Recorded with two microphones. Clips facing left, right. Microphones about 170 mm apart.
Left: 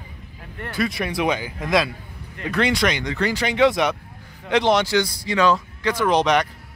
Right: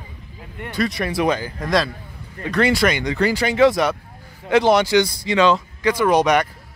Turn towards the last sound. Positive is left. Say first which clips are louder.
# right 2 dB
turn(degrees=-10)  # may be behind; listen again after turning